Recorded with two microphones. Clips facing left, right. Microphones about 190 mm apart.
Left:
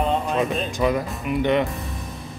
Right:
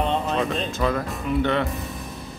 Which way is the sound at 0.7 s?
15° left (ahead or behind).